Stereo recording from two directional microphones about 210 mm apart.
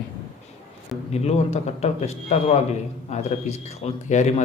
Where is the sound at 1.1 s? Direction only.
30° left (ahead or behind).